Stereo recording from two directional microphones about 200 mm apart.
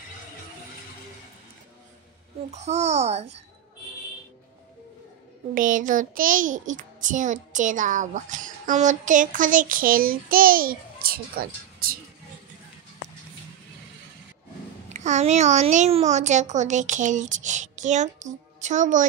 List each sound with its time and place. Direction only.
2.5 s a child's voice: 35° right (ahead or behind)
5.5 s a child's voice: 40° right (ahead or behind)
14.9 s a child's voice: 35° right (ahead or behind)